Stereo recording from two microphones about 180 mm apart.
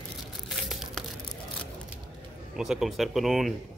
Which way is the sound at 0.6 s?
Centre (ahead or behind).